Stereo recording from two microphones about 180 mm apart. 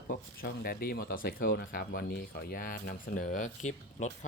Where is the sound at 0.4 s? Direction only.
60° left (ahead or behind).